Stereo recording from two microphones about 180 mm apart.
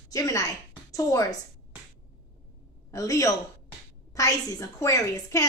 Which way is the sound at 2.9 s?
15° left (ahead or behind).